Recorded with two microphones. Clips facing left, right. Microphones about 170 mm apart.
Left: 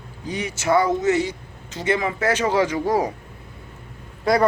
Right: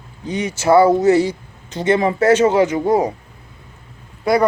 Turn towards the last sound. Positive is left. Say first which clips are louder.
# right 3 dB
turn(degrees=-10)  # may be behind; listen again after turning